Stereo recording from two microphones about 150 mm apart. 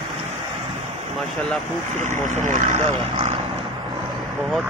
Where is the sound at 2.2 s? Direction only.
55° right (ahead or behind).